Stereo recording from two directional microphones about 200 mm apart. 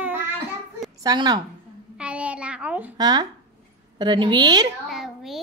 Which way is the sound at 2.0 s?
5° right (ahead or behind).